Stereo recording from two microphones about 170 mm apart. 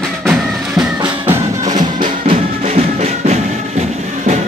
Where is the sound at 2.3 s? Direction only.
40° right (ahead or behind).